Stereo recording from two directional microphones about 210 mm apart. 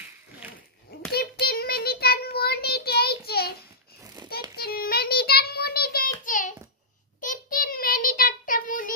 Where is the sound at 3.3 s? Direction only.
50° left (ahead or behind).